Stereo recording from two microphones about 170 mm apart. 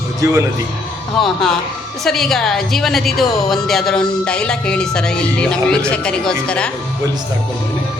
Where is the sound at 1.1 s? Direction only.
Centre (ahead or behind).